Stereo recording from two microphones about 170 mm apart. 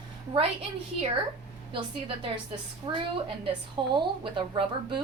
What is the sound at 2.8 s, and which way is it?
Speech, 30° right (ahead or behind).